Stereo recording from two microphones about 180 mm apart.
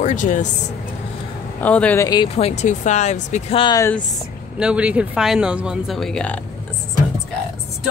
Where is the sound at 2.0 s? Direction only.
25° left (ahead or behind); by 3.6 s 40° left (ahead or behind).